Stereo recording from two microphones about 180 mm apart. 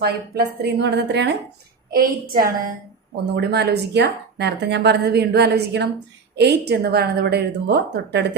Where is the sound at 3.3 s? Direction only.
65° right (ahead or behind).